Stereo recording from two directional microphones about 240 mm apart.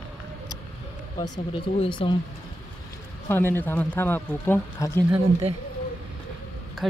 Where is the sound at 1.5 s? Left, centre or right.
Left.